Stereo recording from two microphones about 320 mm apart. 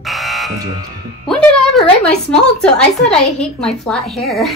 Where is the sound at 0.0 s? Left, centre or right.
Centre.